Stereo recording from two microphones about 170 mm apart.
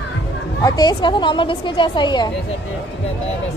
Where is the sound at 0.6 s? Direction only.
20° left (ahead or behind).